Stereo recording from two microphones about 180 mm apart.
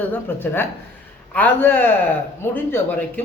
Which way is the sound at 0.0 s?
10° left (ahead or behind).